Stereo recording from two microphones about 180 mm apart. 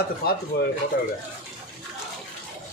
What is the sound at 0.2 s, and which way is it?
Speech, 60° left (ahead or behind).